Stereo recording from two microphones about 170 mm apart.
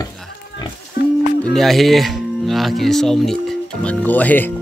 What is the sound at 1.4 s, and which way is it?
Speech, centre (ahead or behind).